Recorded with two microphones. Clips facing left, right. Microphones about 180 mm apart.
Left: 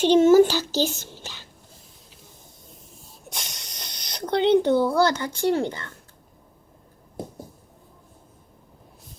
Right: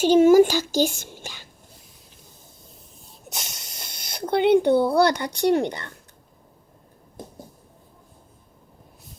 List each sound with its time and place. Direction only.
0.0 s a child's voice: 10° right (ahead or behind)
3.5 s a sound: 5° right (ahead or behind)
4.9 s speech: 15° right (ahead or behind)